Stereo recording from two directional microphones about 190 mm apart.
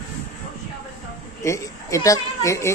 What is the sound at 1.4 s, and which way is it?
Speech, 15° left (ahead or behind).